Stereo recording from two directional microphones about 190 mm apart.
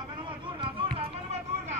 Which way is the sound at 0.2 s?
25° right (ahead or behind).